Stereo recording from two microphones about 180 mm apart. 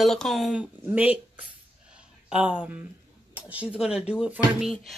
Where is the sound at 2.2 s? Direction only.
5° right (ahead or behind).